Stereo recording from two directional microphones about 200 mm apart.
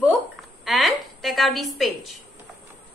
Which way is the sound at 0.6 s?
Centre (ahead or behind).